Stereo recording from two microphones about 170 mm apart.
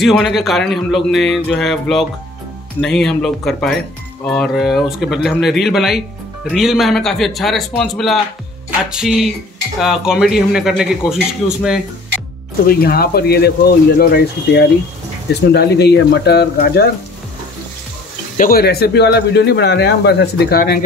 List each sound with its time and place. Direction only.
0.0 s a man's voice: centre (ahead or behind)
12.8 s speech: 65° left (ahead or behind)
13.9 s speech: 80° left
18.4 s speech: 60° left (ahead or behind)